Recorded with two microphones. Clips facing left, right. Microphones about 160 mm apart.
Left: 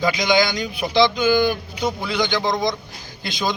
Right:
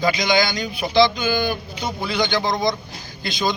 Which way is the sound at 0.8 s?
15° left (ahead or behind).